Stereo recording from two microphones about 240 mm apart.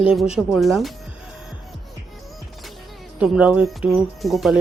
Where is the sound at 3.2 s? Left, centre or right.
Centre.